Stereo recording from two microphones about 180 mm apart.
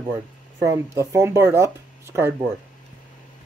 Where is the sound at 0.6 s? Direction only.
15° right (ahead or behind).